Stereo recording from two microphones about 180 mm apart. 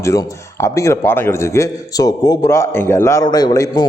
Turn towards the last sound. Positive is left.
turn(degrees=20)  # may be behind; listen again after turning